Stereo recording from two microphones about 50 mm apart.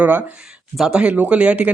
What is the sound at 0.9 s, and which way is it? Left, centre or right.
Speech, right.